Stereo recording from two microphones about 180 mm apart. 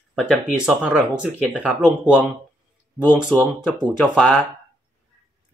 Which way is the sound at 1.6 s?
5° right (ahead or behind).